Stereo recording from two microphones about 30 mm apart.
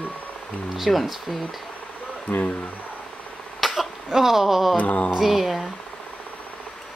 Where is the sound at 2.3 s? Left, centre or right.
Left.